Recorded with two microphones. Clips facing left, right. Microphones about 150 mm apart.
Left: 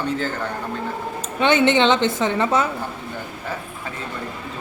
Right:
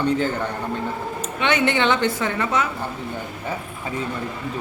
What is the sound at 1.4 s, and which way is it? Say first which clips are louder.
A woman's voice: left 4 dB; 25° left (ahead or behind).